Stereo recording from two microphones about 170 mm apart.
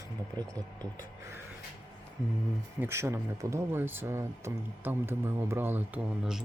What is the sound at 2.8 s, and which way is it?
Speech, 15° right (ahead or behind).